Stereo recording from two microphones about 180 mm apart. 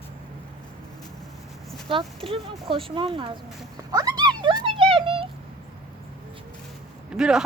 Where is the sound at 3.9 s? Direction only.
20° right (ahead or behind).